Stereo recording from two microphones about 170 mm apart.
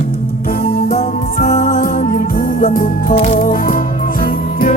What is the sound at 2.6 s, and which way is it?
Music, 55° left (ahead or behind).